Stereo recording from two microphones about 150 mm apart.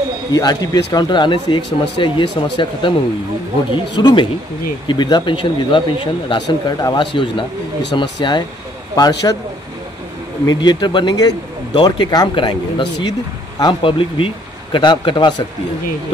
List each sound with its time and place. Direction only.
0.3 s speech: 25° left (ahead or behind)
10.4 s speech: 25° left (ahead or behind)